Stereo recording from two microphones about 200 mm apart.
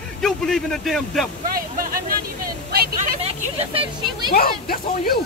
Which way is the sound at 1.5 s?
45° right (ahead or behind).